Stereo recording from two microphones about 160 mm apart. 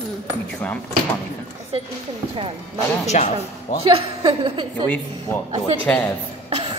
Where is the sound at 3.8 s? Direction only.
35° right (ahead or behind).